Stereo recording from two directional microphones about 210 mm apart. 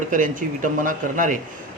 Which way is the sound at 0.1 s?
40° right (ahead or behind).